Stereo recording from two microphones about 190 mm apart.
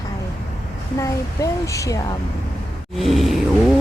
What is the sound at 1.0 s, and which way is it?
Speech, 15° left (ahead or behind).